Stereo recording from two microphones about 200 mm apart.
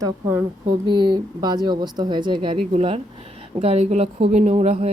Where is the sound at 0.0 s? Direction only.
10° right (ahead or behind).